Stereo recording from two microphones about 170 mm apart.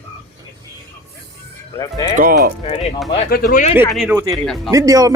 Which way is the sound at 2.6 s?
40° left (ahead or behind).